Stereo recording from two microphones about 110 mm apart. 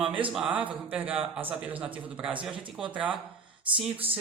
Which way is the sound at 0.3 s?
10° right (ahead or behind).